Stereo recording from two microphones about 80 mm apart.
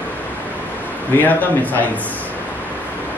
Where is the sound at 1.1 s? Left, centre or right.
Left.